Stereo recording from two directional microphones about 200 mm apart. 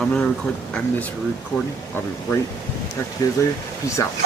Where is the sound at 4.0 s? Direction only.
15° left (ahead or behind).